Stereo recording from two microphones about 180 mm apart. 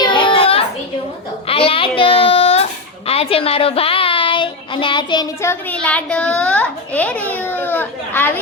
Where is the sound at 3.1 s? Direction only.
30° left (ahead or behind).